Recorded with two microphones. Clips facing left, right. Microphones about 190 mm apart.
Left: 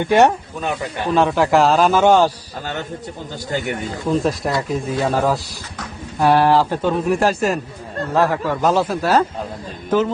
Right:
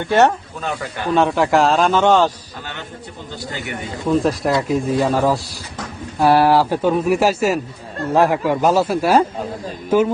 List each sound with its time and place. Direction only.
0.0 s speech: 15° left (ahead or behind)
1.1 s a man's voice: centre (ahead or behind)
4.2 s a man's voice: centre (ahead or behind)